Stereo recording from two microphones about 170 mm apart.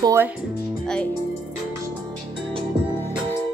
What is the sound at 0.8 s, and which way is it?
Speech, 5° left (ahead or behind).